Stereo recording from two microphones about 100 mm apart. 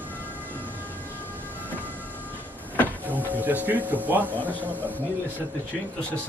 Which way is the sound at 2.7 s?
15° left (ahead or behind).